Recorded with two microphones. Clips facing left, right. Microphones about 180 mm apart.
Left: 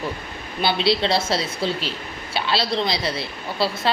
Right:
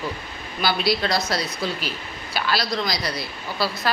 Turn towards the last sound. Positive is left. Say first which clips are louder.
# left 2 dB
turn(degrees=25)  # may be behind; listen again after turning